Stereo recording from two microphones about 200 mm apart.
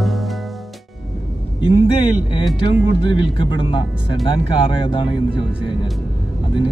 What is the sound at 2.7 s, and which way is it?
Speech, 25° left (ahead or behind).